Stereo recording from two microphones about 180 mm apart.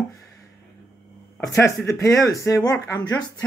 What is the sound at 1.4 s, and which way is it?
Speech, 20° left (ahead or behind).